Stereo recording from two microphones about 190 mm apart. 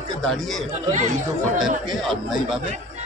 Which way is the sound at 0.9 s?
40° right (ahead or behind).